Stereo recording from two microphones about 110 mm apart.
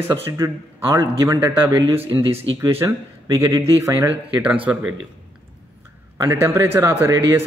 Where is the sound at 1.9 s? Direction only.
60° right (ahead or behind).